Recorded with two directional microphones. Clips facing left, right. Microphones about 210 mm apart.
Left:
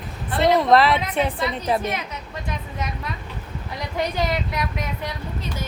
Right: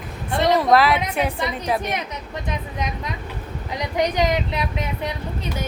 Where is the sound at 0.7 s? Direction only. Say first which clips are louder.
Even; centre (ahead or behind).